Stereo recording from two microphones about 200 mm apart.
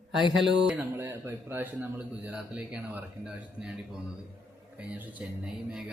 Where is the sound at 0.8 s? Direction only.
10° right (ahead or behind).